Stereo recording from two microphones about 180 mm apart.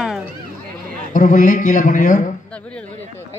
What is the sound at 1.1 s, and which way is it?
A man's voice, 45° left (ahead or behind).